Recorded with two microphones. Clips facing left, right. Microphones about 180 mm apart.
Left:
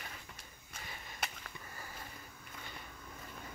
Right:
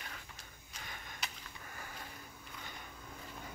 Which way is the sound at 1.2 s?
55° left (ahead or behind).